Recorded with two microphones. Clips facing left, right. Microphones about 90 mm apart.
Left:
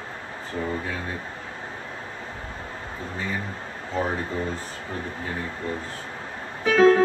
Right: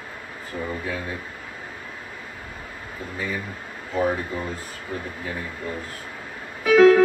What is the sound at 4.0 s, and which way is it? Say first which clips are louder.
Speech: right 4 dB; 35° left (ahead or behind).